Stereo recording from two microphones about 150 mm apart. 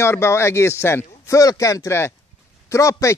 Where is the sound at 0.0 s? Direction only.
15° left (ahead or behind).